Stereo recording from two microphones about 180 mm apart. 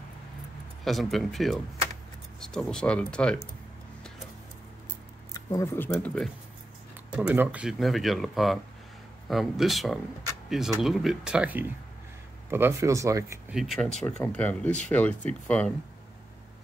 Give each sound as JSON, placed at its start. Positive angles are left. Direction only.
{"t": 0.8, "sound": "speech", "side_deg": 0}
{"t": 5.3, "sound": "speech", "side_deg": 20}
{"t": 7.2, "sound": "speech", "side_deg": -5}
{"t": 13.5, "sound": "speech", "side_deg": 0}